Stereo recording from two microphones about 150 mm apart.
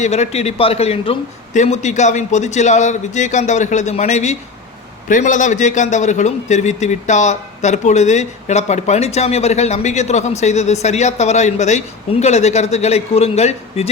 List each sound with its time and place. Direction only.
0.0 s a man's voice: 45° left (ahead or behind)